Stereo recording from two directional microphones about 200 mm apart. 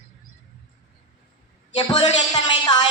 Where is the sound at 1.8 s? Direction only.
20° left (ahead or behind).